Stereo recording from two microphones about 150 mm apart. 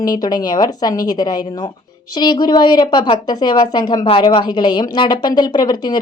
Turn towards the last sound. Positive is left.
turn(degrees=30)  # may be behind; listen again after turning